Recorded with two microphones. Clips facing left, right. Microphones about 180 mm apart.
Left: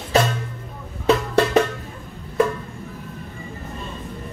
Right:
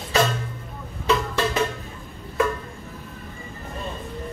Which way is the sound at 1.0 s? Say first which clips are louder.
Left 5 dB; 65° left (ahead or behind).